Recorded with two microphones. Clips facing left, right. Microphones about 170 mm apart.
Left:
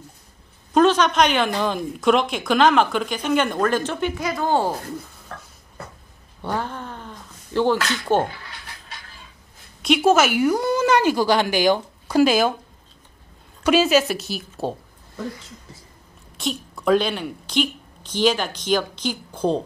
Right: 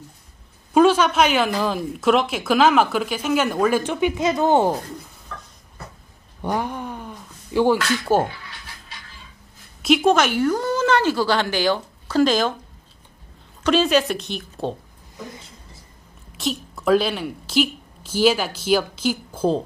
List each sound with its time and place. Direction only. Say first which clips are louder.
0.7 s a woman's voice: right 1 dB; 10° right (ahead or behind)
6.4 s cat: right 2 dB; 15° right (ahead or behind)
9.8 s speech: even; centre (ahead or behind)
13.7 s a woman's voice: left 1 dB; 5° left (ahead or behind)
16.3 s a woman's voice: right 1 dB; centre (ahead or behind)